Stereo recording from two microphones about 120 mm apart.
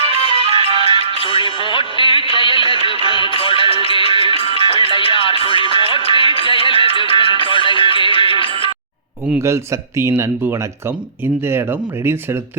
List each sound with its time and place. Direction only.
0.1 s music: 50° left (ahead or behind)
0.4 s music: 55° right (ahead or behind)
1.1 s music: 50° left (ahead or behind)
10.0 s speech: 20° right (ahead or behind)